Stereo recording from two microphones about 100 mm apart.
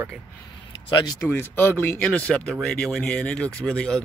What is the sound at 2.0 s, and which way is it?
Speech, 10° left (ahead or behind).